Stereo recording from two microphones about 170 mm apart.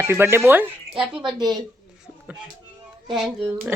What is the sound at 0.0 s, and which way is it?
Speech, 15° right (ahead or behind).